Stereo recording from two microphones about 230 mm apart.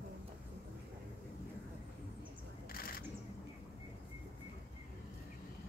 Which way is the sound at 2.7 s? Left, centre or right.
Left.